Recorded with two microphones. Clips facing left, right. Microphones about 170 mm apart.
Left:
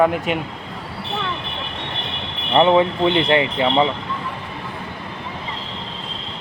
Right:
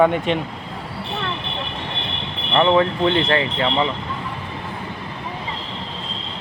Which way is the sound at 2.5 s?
20° left (ahead or behind).